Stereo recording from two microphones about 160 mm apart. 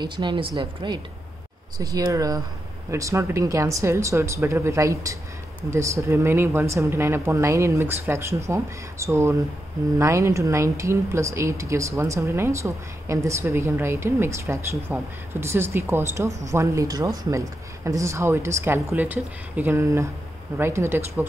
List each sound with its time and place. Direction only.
0.0 s speech: 30° right (ahead or behind)